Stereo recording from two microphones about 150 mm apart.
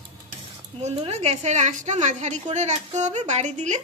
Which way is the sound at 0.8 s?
45° right (ahead or behind).